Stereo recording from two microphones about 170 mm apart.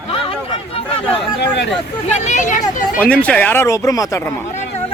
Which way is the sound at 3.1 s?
10° left (ahead or behind).